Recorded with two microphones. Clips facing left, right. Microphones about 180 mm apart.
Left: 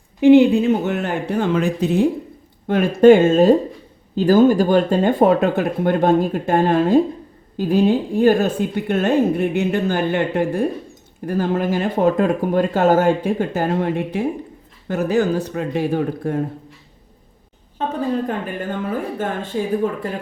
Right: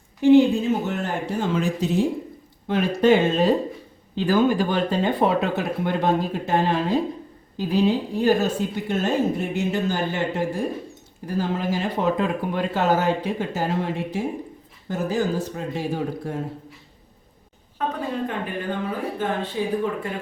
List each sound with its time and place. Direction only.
0.2 s a woman's voice: 70° left (ahead or behind)
17.8 s a woman's voice: 25° left (ahead or behind)
19.2 s speech: 45° left (ahead or behind)